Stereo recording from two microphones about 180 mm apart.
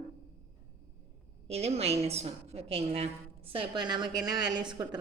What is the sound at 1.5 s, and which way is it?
A woman's voice, 35° right (ahead or behind).